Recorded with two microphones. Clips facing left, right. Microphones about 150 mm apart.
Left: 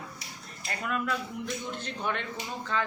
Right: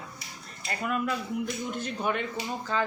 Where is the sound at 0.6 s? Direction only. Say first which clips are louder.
Right 2 dB; 5° right (ahead or behind).